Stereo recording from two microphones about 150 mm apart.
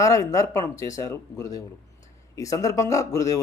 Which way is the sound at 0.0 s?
20° left (ahead or behind).